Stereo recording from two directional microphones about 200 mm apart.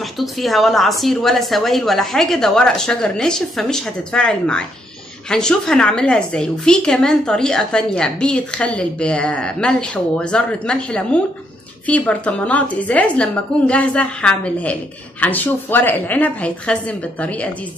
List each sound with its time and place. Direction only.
0.0 s a woman's voice: centre (ahead or behind)